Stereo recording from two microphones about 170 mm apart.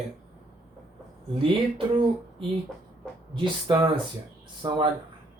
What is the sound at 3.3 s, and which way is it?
Speech, 30° right (ahead or behind).